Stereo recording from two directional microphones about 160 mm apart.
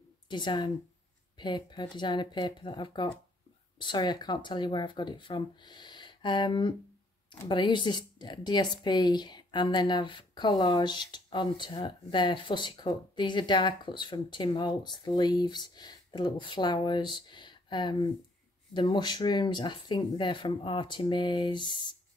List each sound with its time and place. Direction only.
0.3 s a woman's voice: 30° left (ahead or behind)